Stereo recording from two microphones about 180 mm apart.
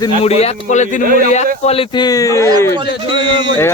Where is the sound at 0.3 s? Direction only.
35° left (ahead or behind).